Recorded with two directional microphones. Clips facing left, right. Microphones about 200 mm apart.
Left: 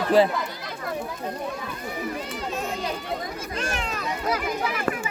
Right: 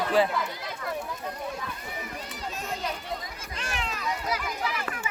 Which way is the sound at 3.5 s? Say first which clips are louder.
Left 3 dB; 45° left (ahead or behind).